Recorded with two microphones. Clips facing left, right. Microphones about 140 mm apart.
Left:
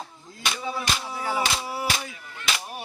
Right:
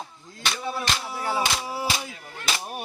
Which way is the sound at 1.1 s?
5° right (ahead or behind).